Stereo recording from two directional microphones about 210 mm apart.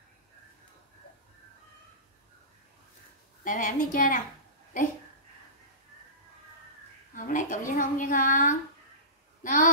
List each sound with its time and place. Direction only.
3.4 s a woman's voice: 40° left (ahead or behind)
7.2 s speech: 40° left (ahead or behind)
9.4 s a sound: 40° left (ahead or behind)